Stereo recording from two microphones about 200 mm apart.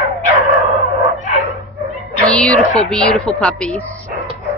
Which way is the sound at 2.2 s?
5° left (ahead or behind).